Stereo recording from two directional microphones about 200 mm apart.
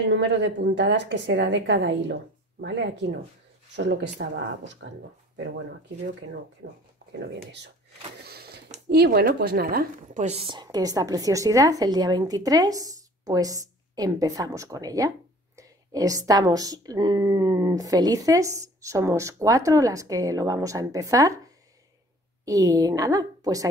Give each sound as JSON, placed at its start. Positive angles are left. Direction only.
{"t": 0.1, "sound": "a woman's voice", "side_deg": -60}
{"t": 7.2, "sound": "a woman's voice", "side_deg": -60}
{"t": 8.2, "sound": "power windows", "side_deg": -50}
{"t": 8.8, "sound": "speech", "side_deg": -55}
{"t": 22.4, "sound": "speech", "side_deg": -15}